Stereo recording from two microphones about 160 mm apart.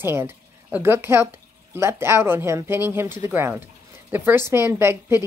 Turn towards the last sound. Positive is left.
turn(degrees=-15)  # may be behind; listen again after turning